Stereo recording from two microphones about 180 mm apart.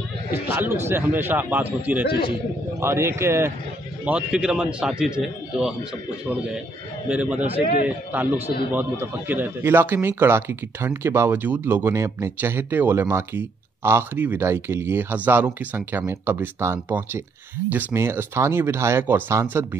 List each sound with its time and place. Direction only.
0.6 s speech: 15° right (ahead or behind)
2.0 s a man's voice: 60° left (ahead or behind)
2.8 s a man's voice: 15° right (ahead or behind)